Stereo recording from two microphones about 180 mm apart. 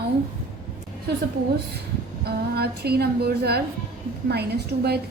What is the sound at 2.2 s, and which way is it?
Speech, 60° right (ahead or behind).